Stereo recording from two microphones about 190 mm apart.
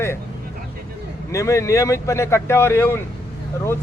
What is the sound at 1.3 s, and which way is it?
Speech, 15° left (ahead or behind).